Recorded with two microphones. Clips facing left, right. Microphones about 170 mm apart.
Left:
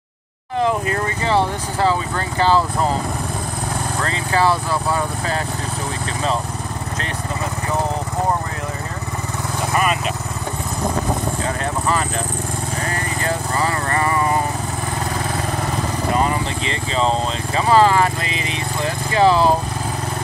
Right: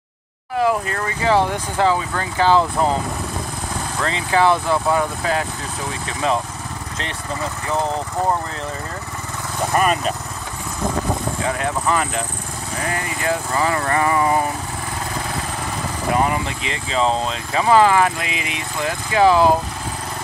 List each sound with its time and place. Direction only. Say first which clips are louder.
1.2 s speech: right 3 dB; 15° right (ahead or behind)
4.1 s speech: right 2 dB; 20° right (ahead or behind)
9.8 s speech: right 2 dB; 40° right (ahead or behind)
11.4 s vehicle: right 4 dB; 10° right (ahead or behind)
16.3 s vehicle: left 1 dB; 10° right (ahead or behind)
17.6 s speech: even; 15° right (ahead or behind)